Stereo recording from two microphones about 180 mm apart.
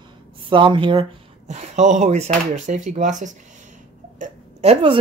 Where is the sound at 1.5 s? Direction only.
40° right (ahead or behind).